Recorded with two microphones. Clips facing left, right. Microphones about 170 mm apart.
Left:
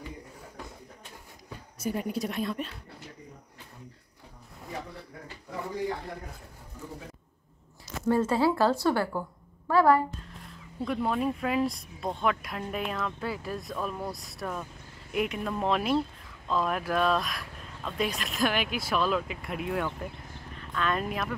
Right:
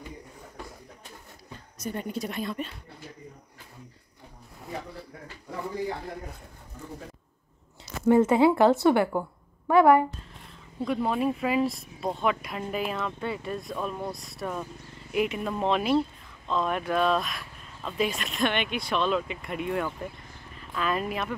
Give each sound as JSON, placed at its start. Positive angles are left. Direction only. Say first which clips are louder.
{"t": 1.8, "sound": "speech", "louder": "left 2 dB", "side_deg": 5}
{"t": 8.1, "sound": "a woman's voice", "louder": "right 5 dB", "side_deg": -20}
{"t": 10.3, "sound": "a sound", "louder": "left 2 dB", "side_deg": 0}
{"t": 10.9, "sound": "speech", "louder": "right 2 dB", "side_deg": -5}